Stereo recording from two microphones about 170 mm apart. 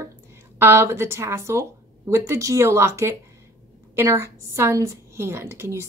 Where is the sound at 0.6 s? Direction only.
15° right (ahead or behind).